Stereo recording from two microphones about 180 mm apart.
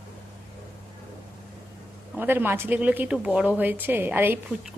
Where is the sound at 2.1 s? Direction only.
10° right (ahead or behind).